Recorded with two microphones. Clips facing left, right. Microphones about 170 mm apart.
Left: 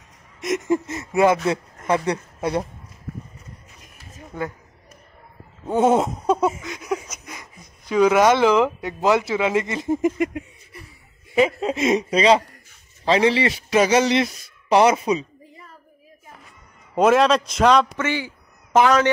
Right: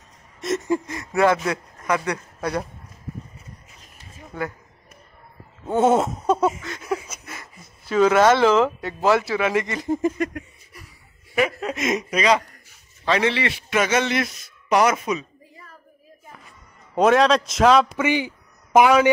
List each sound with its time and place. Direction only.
0.4 s speech: 20° left (ahead or behind)
5.7 s a sound: centre (ahead or behind)
6.6 s speech: 10° left (ahead or behind)
7.2 s a sound: 15° left (ahead or behind)
7.8 s a man's voice: 15° left (ahead or behind); by 15.7 s 30° left (ahead or behind)
16.9 s a man's voice: centre (ahead or behind)